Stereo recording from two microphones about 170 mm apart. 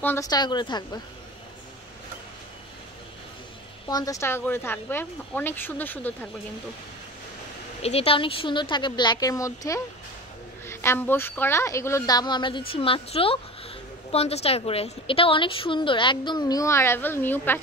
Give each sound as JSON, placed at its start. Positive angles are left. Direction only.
{"t": 0.0, "sound": "a woman's voice", "side_deg": 15}
{"t": 0.3, "sound": "a woman's voice", "side_deg": 25}
{"t": 3.9, "sound": "a woman's voice", "side_deg": 20}
{"t": 7.8, "sound": "a woman's voice", "side_deg": 35}